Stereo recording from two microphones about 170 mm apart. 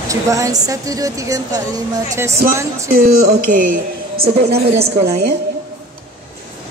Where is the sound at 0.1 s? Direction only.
20° right (ahead or behind).